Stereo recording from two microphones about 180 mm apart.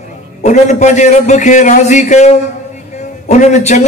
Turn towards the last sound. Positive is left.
turn(degrees=40)  # may be behind; listen again after turning